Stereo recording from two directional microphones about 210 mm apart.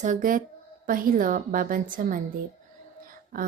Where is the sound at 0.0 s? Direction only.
40° right (ahead or behind).